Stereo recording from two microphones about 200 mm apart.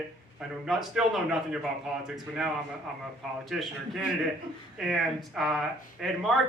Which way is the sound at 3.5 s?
Centre (ahead or behind).